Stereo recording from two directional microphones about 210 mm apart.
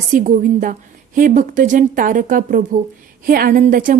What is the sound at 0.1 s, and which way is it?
A woman's voice, 40° right (ahead or behind).